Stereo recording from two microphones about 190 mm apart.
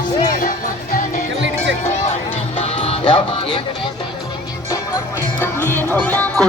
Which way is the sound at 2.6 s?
30° left (ahead or behind).